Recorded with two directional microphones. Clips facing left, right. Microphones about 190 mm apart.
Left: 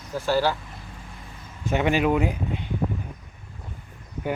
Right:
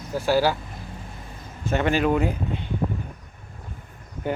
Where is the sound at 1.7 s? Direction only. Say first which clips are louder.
Even; 15° left (ahead or behind).